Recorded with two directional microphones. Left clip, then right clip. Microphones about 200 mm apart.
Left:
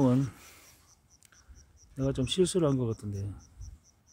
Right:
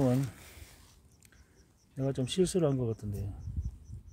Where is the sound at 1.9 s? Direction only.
10° left (ahead or behind).